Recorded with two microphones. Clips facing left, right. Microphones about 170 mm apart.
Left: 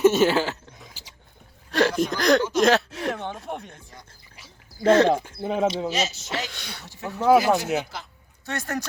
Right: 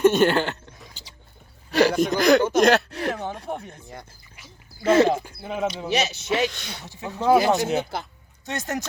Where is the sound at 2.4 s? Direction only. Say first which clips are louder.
Right 3 dB; 55° right (ahead or behind).